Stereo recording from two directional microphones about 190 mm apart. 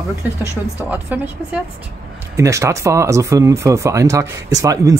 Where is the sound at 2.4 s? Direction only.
15° right (ahead or behind).